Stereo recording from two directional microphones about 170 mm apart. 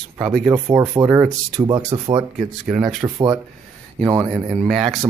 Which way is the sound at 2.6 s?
Centre (ahead or behind).